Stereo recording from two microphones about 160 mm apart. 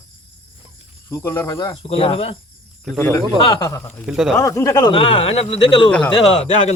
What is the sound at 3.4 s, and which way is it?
Speech, 25° left (ahead or behind).